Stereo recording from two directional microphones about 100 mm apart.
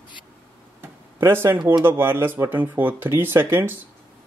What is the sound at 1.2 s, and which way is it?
Speech, 25° right (ahead or behind).